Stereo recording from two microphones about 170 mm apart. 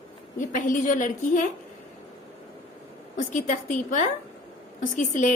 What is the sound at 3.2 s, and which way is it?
A woman's voice, 45° left (ahead or behind).